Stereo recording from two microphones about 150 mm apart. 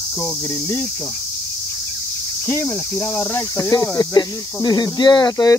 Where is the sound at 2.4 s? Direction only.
15° left (ahead or behind).